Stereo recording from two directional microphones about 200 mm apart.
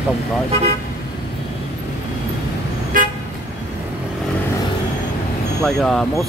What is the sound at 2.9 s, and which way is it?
Toot, 40° right (ahead or behind).